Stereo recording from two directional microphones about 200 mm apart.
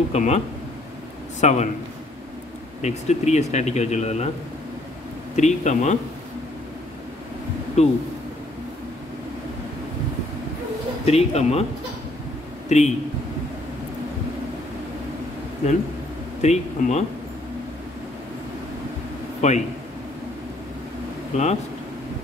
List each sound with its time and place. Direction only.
0.1 s speech: 35° left (ahead or behind)
1.4 s speech: 35° left (ahead or behind)
2.8 s speech: 35° left (ahead or behind)
5.3 s speech: 35° left (ahead or behind)
7.8 s speech: 35° left (ahead or behind)
11.1 s speech: 30° left (ahead or behind)
12.6 s a man's voice: 35° left (ahead or behind)
16.3 s speech: 35° left (ahead or behind)
19.4 s speech: 35° left (ahead or behind)
21.3 s speech: 35° left (ahead or behind)